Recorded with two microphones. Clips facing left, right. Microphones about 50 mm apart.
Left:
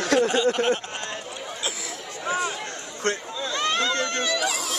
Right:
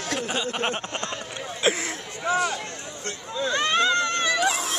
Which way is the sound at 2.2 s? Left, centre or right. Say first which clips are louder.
Right 3 dB; centre.